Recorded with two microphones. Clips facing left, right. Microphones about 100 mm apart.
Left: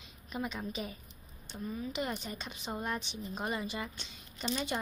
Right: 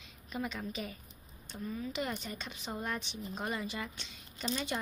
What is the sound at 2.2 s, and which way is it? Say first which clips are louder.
A woman's voice: left 1 dB; 10° left (ahead or behind).